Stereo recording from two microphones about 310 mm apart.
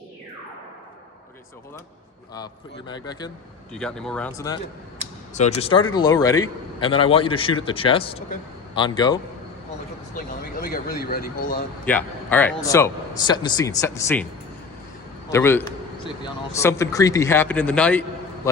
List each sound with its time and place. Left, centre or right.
2.8 s a man's voice: centre
3.7 s speech: centre
5.3 s a man's voice: left
10.2 s speech: left
11.9 s a man's voice: centre
15.3 s a man's voice: centre